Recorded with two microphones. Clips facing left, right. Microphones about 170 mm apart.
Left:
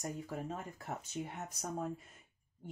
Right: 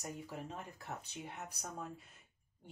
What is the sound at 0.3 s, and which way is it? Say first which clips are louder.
Speech: left 4 dB; 45° left (ahead or behind).